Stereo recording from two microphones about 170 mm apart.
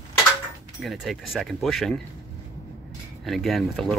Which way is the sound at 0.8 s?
Centre (ahead or behind).